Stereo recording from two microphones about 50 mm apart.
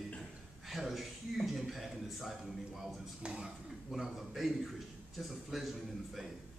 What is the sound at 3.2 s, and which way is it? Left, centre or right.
Speech, centre.